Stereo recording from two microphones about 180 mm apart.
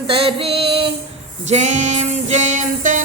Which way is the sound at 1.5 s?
40° right (ahead or behind).